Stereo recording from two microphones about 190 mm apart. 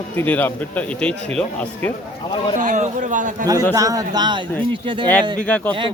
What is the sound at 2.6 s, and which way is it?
Speech, 40° right (ahead or behind).